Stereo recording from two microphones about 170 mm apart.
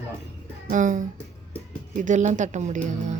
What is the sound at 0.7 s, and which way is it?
A woman's voice, 50° right (ahead or behind).